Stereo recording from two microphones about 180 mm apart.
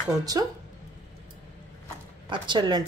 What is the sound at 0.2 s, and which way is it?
Speech, 20° right (ahead or behind).